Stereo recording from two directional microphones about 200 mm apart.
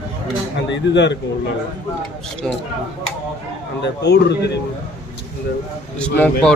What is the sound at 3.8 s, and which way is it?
Speech, 55° left (ahead or behind).